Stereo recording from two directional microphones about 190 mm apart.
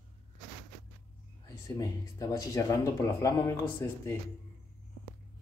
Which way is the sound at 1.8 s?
20° left (ahead or behind).